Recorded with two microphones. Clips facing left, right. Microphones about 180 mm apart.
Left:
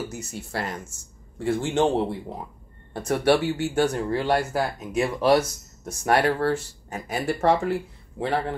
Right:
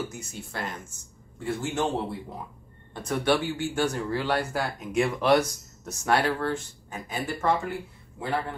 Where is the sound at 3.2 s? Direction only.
70° left (ahead or behind).